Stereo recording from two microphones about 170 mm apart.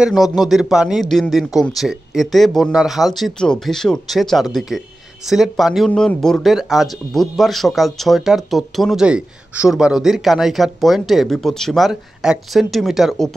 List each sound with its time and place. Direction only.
0.0 s speech: centre (ahead or behind)